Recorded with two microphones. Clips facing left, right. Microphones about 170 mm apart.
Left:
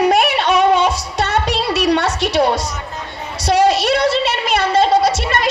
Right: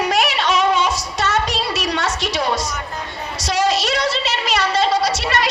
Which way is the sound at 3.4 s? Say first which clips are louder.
Left 5 dB; 60° left (ahead or behind).